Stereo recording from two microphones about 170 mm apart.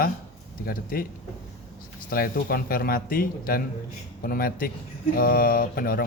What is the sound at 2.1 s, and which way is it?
A man's voice, 60° left (ahead or behind).